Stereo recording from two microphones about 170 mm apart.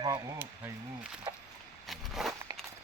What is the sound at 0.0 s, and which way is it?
Speech, 15° right (ahead or behind).